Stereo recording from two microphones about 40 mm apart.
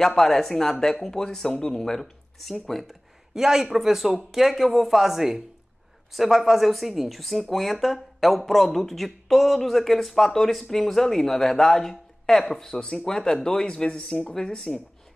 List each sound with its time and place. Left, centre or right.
0.2 s speech: centre